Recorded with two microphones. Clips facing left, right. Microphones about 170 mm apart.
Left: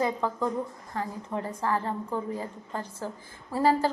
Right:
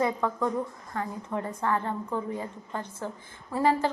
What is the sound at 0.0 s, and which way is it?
A woman's voice, 30° left (ahead or behind).